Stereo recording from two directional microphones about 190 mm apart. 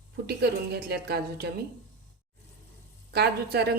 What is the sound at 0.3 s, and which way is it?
A woman's voice, 55° right (ahead or behind).